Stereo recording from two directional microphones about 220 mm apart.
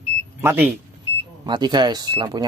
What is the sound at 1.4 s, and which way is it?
Speech, 20° right (ahead or behind).